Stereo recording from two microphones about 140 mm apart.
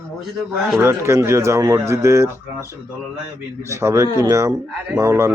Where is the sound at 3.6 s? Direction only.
20° right (ahead or behind).